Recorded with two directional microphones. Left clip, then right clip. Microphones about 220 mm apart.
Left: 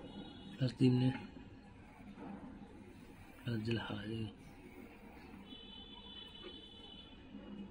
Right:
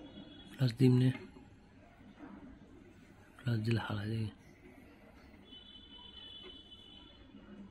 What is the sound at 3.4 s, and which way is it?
Speech, 35° right (ahead or behind).